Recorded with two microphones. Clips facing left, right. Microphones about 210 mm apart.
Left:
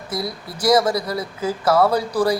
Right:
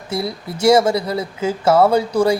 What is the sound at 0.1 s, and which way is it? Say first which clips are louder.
Speech: right 4 dB; 25° right (ahead or behind).